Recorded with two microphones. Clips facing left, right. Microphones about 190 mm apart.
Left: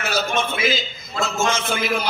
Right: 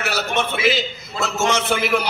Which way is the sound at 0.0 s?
70° right (ahead or behind).